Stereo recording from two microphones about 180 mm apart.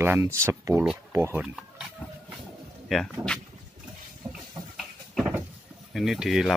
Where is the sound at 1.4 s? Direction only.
5° right (ahead or behind).